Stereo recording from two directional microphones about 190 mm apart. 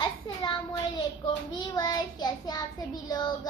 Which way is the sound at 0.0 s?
25° left (ahead or behind).